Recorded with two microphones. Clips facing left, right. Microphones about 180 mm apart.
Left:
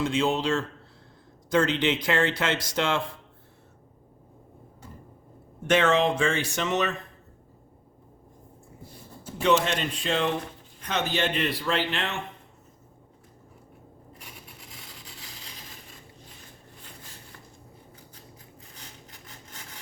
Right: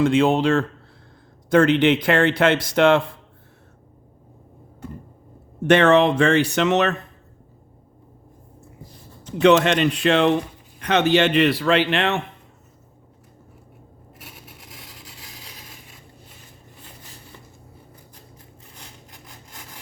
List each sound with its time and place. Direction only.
0.0 s speech: 60° right (ahead or behind)
5.6 s a man's voice: 65° right (ahead or behind)
9.4 s a man's voice: 70° right (ahead or behind)